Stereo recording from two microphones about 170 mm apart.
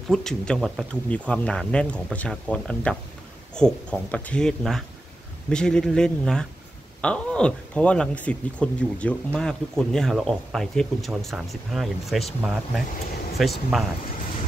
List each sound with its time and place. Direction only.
0.1 s speech: 5° left (ahead or behind)